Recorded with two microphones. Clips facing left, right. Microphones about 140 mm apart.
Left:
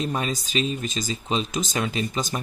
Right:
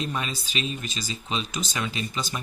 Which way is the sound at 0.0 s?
40° left (ahead or behind).